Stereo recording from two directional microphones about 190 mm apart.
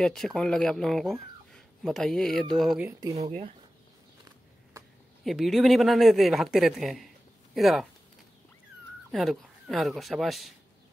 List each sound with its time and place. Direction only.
0.0 s speech: centre (ahead or behind)
3.2 s speech: 35° right (ahead or behind)
5.2 s speech: centre (ahead or behind)
9.1 s speech: centre (ahead or behind)